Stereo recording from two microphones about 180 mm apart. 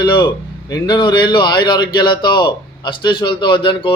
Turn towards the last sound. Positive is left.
turn(degrees=25)  # may be behind; listen again after turning